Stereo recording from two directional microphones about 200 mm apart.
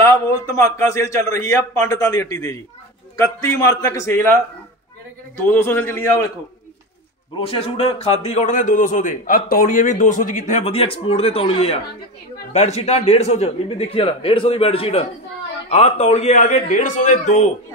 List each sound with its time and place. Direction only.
0.0 s a man's voice: 15° left (ahead or behind)
5.5 s a man's voice: 10° left (ahead or behind)
7.3 s a man's voice: 30° left (ahead or behind)